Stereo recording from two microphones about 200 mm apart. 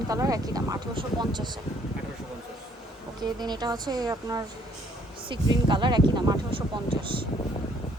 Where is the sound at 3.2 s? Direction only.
20° right (ahead or behind).